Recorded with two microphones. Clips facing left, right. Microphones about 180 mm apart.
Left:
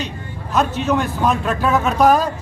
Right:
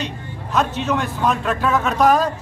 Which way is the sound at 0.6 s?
5° left (ahead or behind).